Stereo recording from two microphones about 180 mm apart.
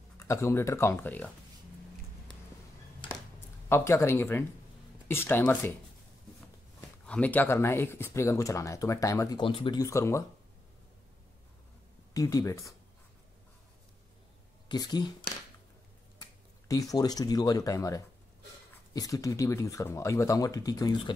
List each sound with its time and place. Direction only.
0.2 s speech: 15° left (ahead or behind)
3.6 s speech: 15° left (ahead or behind)
7.1 s speech: 10° left (ahead or behind)
9.4 s speech: 25° left (ahead or behind)
12.1 s speech: 20° left (ahead or behind)
14.7 s speech: 20° left (ahead or behind)
16.2 s speech: 20° left (ahead or behind)